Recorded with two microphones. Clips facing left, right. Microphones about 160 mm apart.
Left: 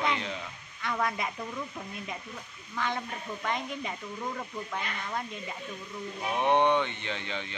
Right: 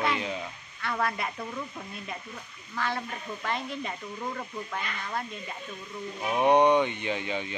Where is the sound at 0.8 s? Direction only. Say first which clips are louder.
Right 1 dB; 15° left (ahead or behind).